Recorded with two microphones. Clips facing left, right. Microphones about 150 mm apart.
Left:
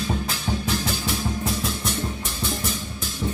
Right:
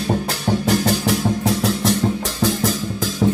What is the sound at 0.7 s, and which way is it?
Music, 75° right (ahead or behind).